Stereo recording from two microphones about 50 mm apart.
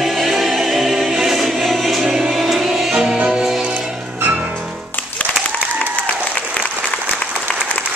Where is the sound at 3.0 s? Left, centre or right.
Right.